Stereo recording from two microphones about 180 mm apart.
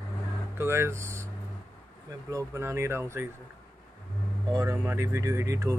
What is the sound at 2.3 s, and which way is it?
Speech, 15° right (ahead or behind).